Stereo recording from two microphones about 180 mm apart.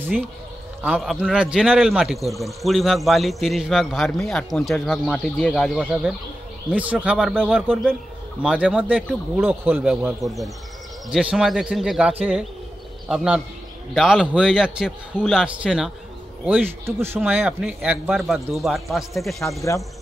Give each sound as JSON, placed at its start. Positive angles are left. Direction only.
{"t": 0.8, "sound": "a man's voice", "side_deg": 0}